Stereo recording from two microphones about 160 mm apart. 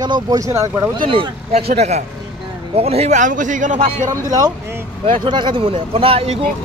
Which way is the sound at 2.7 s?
40° right (ahead or behind).